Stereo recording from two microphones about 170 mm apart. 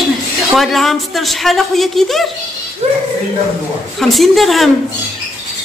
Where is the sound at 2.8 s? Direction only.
35° right (ahead or behind).